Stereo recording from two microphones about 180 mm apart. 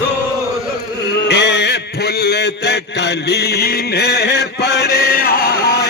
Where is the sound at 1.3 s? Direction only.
70° left (ahead or behind).